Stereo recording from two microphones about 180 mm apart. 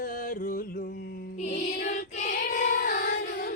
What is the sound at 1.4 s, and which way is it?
Music, 45° left (ahead or behind).